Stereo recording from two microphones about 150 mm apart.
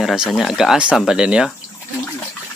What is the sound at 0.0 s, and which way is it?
Speech, centre (ahead or behind).